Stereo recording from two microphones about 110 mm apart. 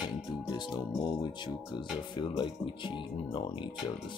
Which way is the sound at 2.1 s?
45° left (ahead or behind).